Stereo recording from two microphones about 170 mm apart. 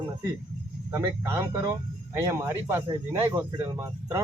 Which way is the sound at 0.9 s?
15° right (ahead or behind).